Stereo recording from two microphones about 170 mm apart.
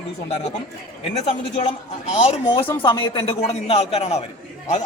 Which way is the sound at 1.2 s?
35° left (ahead or behind).